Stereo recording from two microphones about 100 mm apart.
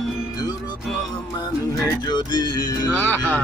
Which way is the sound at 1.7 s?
40° left (ahead or behind).